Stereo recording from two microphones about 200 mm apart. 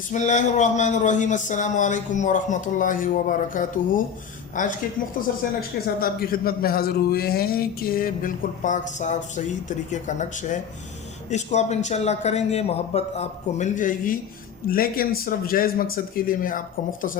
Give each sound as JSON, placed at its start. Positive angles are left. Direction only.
{"t": 0.1, "sound": "a man's voice", "side_deg": 35}